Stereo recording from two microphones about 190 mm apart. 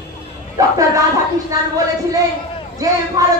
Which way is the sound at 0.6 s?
15° right (ahead or behind).